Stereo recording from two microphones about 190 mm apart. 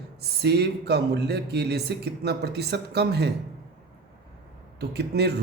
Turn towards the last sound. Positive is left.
turn(degrees=-60)  # may be behind; listen again after turning